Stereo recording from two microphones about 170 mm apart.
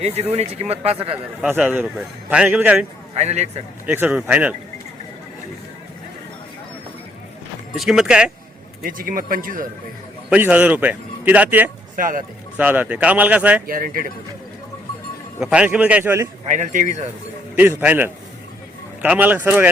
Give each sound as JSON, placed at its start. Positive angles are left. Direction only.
{"t": 0.0, "sound": "speech", "side_deg": -40}
{"t": 1.4, "sound": "a man's voice", "side_deg": -5}
{"t": 3.2, "sound": "speech", "side_deg": -40}
{"t": 3.8, "sound": "a man's voice", "side_deg": -10}
{"t": 7.8, "sound": "speech", "side_deg": 0}
{"t": 8.8, "sound": "speech", "side_deg": -55}
{"t": 10.2, "sound": "a man's voice", "side_deg": -10}
{"t": 11.9, "sound": "speech", "side_deg": -55}
{"t": 12.5, "sound": "a man's voice", "side_deg": -10}
{"t": 13.7, "sound": "speech", "side_deg": -55}
{"t": 15.4, "sound": "a man's voice", "side_deg": -5}
{"t": 16.5, "sound": "speech", "side_deg": -50}
{"t": 17.5, "sound": "a man's voice", "side_deg": -10}